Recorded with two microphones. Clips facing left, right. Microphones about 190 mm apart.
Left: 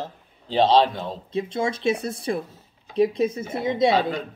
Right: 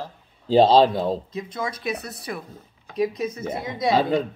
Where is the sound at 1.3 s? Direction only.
25° left (ahead or behind).